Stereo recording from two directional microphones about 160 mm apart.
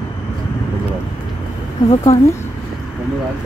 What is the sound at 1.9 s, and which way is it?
Speech, 40° left (ahead or behind).